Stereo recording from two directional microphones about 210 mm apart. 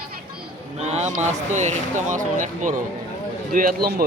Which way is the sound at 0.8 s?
35° right (ahead or behind).